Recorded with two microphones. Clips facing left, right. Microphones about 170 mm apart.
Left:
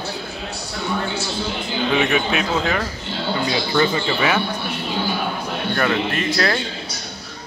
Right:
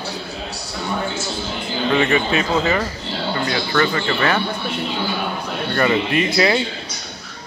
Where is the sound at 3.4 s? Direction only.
15° left (ahead or behind).